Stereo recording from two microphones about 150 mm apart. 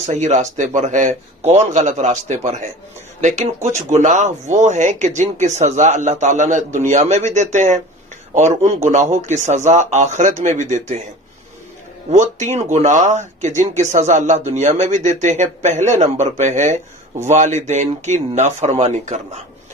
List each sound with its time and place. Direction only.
0.0 s speech: 50° right (ahead or behind)
12.1 s speech: 50° right (ahead or behind)